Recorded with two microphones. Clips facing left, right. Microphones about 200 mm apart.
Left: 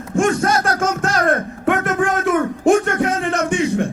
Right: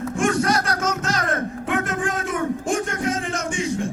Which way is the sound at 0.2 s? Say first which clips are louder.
Left 4 dB; 50° left (ahead or behind).